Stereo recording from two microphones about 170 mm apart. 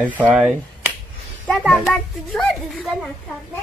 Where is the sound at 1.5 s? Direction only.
Centre (ahead or behind).